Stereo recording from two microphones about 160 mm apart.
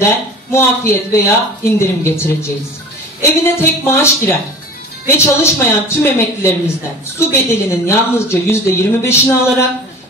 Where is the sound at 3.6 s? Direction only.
15° left (ahead or behind).